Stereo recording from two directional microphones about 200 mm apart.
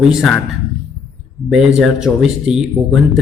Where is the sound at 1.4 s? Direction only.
5° right (ahead or behind).